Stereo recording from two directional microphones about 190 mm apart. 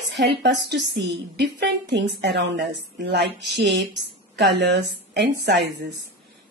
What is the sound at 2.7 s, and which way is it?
Speech, 65° right (ahead or behind).